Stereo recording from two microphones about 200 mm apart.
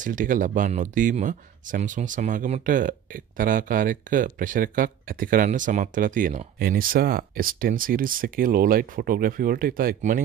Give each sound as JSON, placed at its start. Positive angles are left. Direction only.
{"t": 0.0, "sound": "speech", "side_deg": -40}